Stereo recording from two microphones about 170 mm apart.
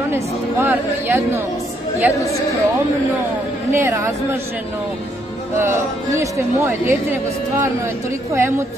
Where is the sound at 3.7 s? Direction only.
15° right (ahead or behind).